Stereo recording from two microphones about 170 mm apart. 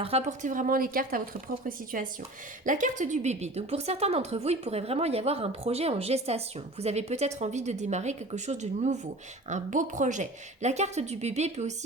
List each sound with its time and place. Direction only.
0.0 s a woman's voice: 40° right (ahead or behind)